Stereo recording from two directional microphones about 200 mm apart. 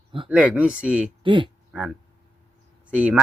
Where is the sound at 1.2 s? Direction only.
25° right (ahead or behind).